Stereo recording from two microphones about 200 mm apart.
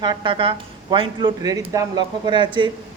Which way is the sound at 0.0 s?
20° right (ahead or behind).